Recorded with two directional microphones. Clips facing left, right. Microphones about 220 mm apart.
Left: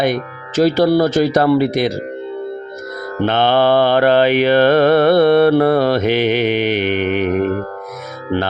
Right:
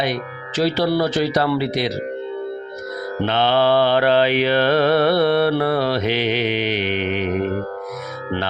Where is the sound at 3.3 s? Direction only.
50° left (ahead or behind).